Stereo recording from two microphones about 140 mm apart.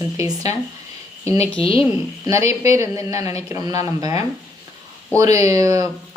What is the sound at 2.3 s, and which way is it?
A woman's voice, 20° right (ahead or behind).